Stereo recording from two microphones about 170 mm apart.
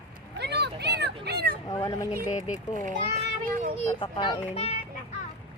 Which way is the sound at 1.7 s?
20° left (ahead or behind).